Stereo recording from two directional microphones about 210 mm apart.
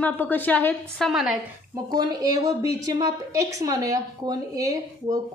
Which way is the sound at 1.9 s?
20° right (ahead or behind).